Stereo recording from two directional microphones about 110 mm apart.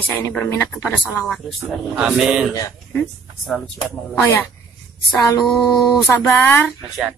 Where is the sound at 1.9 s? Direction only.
5° right (ahead or behind).